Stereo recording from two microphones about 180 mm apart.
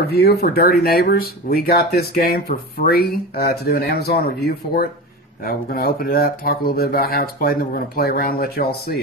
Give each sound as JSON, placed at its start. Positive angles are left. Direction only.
{"t": 0.0, "sound": "speech", "side_deg": 65}